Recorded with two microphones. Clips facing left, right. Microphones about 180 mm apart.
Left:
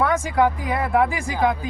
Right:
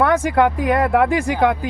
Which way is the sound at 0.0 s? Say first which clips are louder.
Right 4 dB; 65° right (ahead or behind).